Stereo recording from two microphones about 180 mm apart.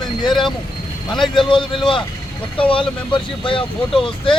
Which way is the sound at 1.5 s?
25° left (ahead or behind).